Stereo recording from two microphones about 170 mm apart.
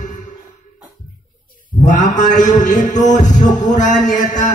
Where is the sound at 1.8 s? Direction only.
45° left (ahead or behind).